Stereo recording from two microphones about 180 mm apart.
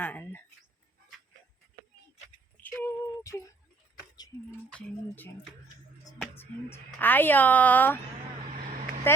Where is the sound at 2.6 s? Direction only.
10° left (ahead or behind).